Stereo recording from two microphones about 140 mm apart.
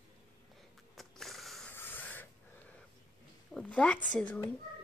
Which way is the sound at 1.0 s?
Centre (ahead or behind).